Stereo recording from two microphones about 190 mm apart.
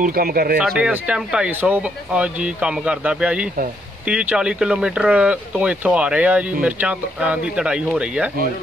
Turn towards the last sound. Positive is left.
turn(degrees=-5)  # may be behind; listen again after turning